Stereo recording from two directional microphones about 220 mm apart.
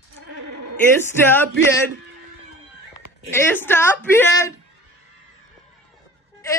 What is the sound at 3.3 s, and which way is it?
A woman's voice, 10° left (ahead or behind).